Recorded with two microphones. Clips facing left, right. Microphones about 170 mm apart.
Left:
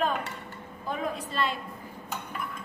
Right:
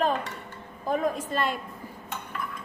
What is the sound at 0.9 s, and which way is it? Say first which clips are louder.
Speech: right 6 dB; 45° right (ahead or behind).